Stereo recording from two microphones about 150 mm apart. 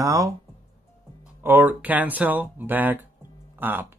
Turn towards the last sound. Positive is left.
turn(degrees=-15)  # may be behind; listen again after turning